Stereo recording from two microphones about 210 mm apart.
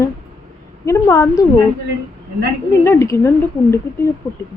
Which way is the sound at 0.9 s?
15° left (ahead or behind).